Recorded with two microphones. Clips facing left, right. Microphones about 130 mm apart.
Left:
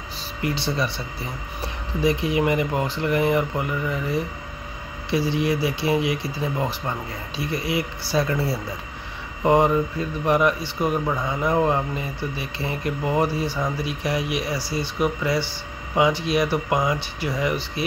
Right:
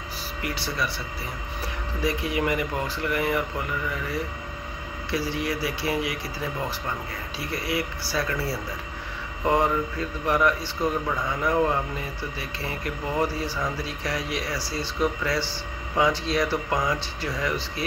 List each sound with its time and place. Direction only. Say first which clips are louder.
0.4 s speech: left 5 dB; 25° left (ahead or behind)